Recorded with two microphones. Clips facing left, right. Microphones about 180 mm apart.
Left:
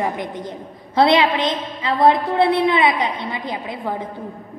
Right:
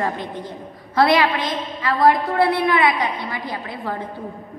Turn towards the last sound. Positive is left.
turn(degrees=15)  # may be behind; listen again after turning